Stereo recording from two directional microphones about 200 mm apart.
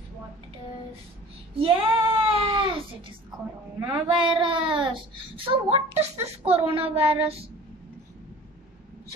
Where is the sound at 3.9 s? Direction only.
25° right (ahead or behind).